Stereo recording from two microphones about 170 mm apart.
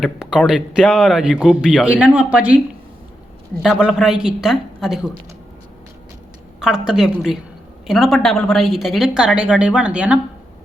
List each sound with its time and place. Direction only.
0.0 s speech: 5° right (ahead or behind)
3.6 s speech: 5° right (ahead or behind)
6.6 s speech: 5° right (ahead or behind)